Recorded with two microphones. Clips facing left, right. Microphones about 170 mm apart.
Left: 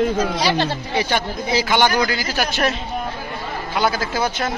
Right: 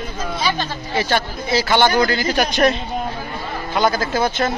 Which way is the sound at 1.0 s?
15° left (ahead or behind).